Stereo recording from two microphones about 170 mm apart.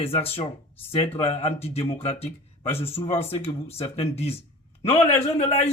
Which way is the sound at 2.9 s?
35° left (ahead or behind).